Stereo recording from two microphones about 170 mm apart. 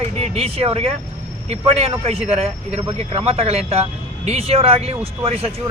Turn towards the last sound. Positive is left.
turn(degrees=-35)  # may be behind; listen again after turning